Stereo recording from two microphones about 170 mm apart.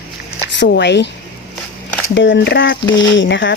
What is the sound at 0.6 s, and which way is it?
Speech, 90° left.